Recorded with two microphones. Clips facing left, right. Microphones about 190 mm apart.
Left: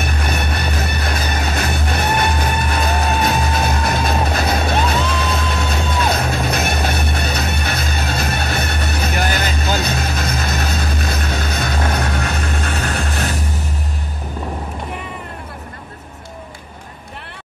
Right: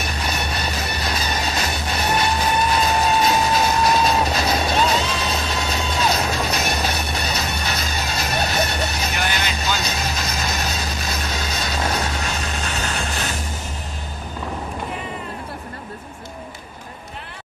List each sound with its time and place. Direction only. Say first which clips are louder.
0.0 s music: left 3 dB; 55° left (ahead or behind)